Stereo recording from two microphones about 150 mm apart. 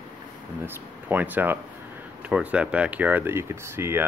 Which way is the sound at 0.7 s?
15° right (ahead or behind).